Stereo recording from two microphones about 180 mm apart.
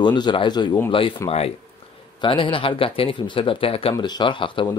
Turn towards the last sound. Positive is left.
turn(degrees=30)  # may be behind; listen again after turning